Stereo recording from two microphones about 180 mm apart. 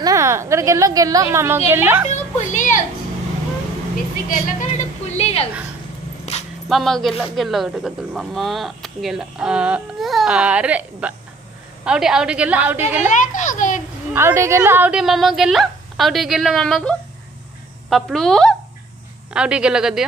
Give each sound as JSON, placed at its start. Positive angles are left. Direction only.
{"t": 0.0, "sound": "a woman's voice", "side_deg": -15}
{"t": 2.0, "sound": "a sound", "side_deg": 40}
{"t": 4.3, "sound": "a woman's voice", "side_deg": 40}
{"t": 6.3, "sound": "dog", "side_deg": 35}
{"t": 6.7, "sound": "speech", "side_deg": 0}
{"t": 13.0, "sound": "a child's voice", "side_deg": 45}
{"t": 14.1, "sound": "a woman's voice", "side_deg": -15}